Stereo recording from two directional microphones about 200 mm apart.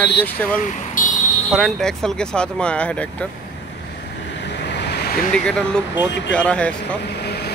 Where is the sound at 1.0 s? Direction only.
40° left (ahead or behind).